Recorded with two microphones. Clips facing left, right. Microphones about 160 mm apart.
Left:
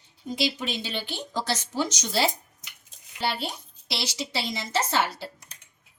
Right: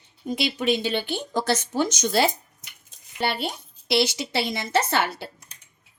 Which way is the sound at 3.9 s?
55° right (ahead or behind).